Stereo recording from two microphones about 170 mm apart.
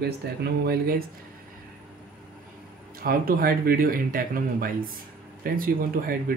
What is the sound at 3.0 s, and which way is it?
Speech, 60° right (ahead or behind).